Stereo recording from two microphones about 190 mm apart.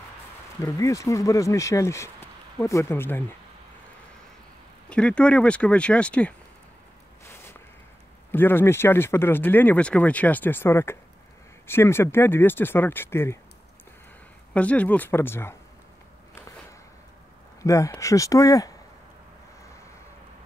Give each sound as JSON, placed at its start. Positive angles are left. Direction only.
{"t": 0.7, "sound": "speech", "side_deg": 15}
{"t": 4.8, "sound": "speech", "side_deg": 5}
{"t": 8.3, "sound": "speech", "side_deg": 10}
{"t": 14.5, "sound": "speech", "side_deg": 5}
{"t": 17.6, "sound": "speech", "side_deg": 15}